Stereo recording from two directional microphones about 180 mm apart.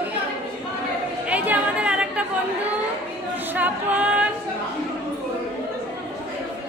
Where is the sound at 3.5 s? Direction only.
10° right (ahead or behind).